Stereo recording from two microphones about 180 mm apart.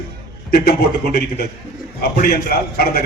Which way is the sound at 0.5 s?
60° left (ahead or behind).